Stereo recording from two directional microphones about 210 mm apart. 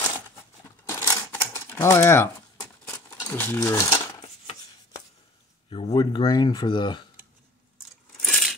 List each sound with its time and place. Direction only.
0.8 s typewriter: 10° left (ahead or behind)
2.8 s crumpling: 10° left (ahead or behind)
5.7 s speech: 25° left (ahead or behind)
8.2 s coin: centre (ahead or behind)